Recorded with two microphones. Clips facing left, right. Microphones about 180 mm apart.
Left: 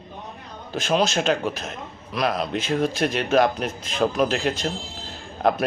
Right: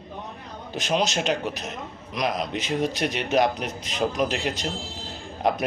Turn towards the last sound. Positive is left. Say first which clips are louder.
# left 3 dB
turn(degrees=-15)  # may be behind; listen again after turning